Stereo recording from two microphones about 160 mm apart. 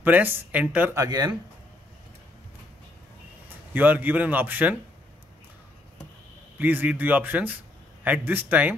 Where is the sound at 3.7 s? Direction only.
10° right (ahead or behind).